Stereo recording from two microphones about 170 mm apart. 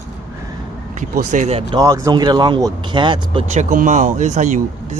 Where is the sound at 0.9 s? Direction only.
45° right (ahead or behind).